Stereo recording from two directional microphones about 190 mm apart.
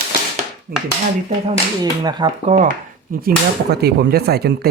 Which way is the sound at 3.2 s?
55° right (ahead or behind).